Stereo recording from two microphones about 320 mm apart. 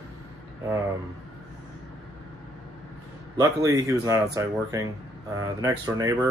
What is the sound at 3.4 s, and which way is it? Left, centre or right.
Speech, centre.